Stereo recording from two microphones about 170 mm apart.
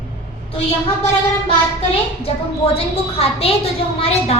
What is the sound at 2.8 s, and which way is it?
A woman's voice, 35° left (ahead or behind).